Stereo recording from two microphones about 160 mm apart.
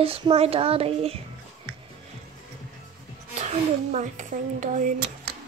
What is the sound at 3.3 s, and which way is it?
Speech, 45° right (ahead or behind).